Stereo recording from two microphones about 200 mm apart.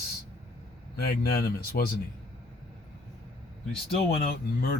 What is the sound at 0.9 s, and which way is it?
Speech, 50° left (ahead or behind).